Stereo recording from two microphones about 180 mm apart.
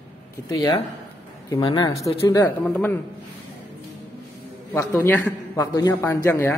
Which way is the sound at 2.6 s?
10° left (ahead or behind).